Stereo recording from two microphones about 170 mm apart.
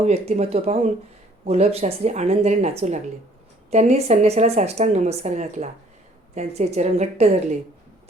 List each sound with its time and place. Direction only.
0.0 s a woman's voice: 40° right (ahead or behind)